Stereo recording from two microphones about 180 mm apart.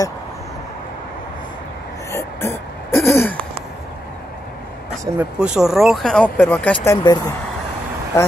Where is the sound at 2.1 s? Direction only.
15° left (ahead or behind).